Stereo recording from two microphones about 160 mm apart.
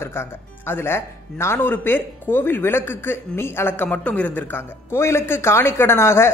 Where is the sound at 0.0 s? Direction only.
15° left (ahead or behind).